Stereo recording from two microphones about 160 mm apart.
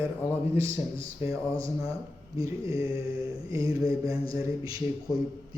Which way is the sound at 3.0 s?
35° left (ahead or behind).